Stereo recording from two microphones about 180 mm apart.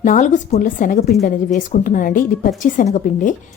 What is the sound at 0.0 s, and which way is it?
A woman's voice, 45° left (ahead or behind).